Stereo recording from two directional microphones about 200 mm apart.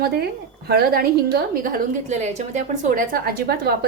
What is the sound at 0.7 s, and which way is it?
A woman's voice, 50° right (ahead or behind).